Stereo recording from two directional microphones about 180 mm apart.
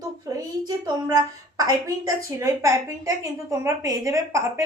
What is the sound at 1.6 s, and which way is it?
A woman's voice, 20° right (ahead or behind).